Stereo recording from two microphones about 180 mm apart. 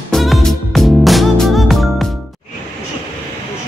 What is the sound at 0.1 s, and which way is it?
Music, centre (ahead or behind).